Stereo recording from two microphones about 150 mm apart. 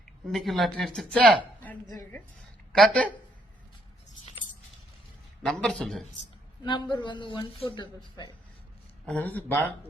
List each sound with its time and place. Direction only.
0.3 s speech: centre (ahead or behind)
2.7 s speech: 5° left (ahead or behind)
5.4 s speech: 5° left (ahead or behind)
6.7 s a man's voice: 30° left (ahead or behind)
9.0 s speech: 10° left (ahead or behind)